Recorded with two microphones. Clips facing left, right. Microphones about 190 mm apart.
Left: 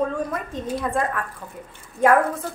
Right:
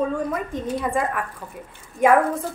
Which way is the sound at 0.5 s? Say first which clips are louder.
Left 1 dB; 15° right (ahead or behind).